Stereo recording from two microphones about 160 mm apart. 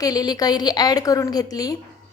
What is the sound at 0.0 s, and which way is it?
A woman's voice, 25° left (ahead or behind).